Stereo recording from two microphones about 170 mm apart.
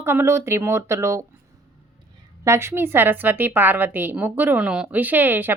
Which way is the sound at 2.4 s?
15° right (ahead or behind).